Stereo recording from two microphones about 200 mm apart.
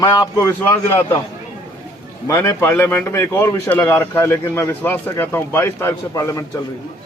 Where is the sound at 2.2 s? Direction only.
15° left (ahead or behind).